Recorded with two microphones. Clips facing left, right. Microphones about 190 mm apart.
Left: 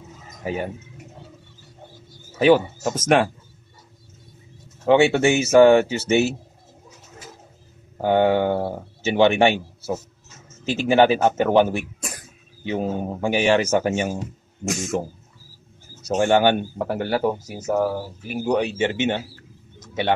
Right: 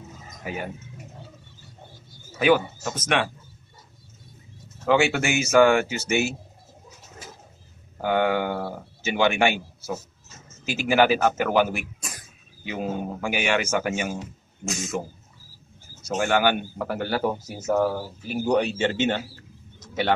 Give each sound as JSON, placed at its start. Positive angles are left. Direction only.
{"t": 0.4, "sound": "speech", "side_deg": 30}
{"t": 2.3, "sound": "a man's voice", "side_deg": 30}
{"t": 4.8, "sound": "speech", "side_deg": 25}
{"t": 8.0, "sound": "a man's voice", "side_deg": 30}
{"t": 17.3, "sound": "speech", "side_deg": 15}